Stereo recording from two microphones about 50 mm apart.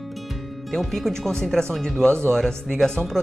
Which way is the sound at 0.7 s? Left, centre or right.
Centre.